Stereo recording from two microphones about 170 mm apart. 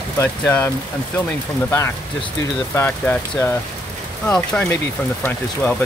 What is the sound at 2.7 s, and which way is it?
Speech, 10° left (ahead or behind).